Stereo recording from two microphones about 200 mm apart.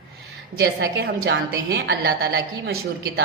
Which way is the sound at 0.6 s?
55° right (ahead or behind).